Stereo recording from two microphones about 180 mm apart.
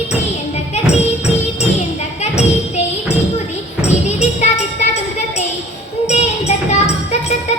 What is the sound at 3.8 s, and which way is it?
Music, 40° left (ahead or behind).